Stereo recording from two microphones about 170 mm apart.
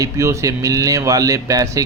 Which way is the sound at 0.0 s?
15° right (ahead or behind).